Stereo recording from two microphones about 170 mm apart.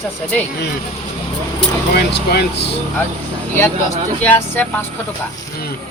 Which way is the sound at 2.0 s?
75° left (ahead or behind).